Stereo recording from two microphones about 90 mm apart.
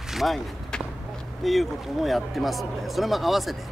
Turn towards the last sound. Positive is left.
turn(degrees=0)  # may be behind; listen again after turning